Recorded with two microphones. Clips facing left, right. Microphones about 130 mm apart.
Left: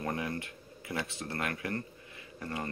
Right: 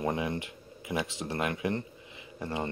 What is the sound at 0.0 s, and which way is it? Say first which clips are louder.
Speech: right 4 dB; 20° right (ahead or behind).